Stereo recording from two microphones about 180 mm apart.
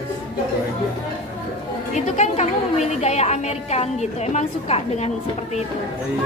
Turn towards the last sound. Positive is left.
turn(degrees=35)  # may be behind; listen again after turning